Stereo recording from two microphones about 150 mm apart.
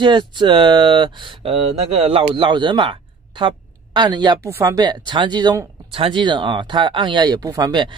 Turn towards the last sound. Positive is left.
turn(degrees=-30)  # may be behind; listen again after turning